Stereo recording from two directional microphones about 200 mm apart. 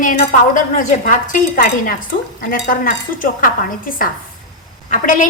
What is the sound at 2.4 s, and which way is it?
Dishes, 45° left (ahead or behind).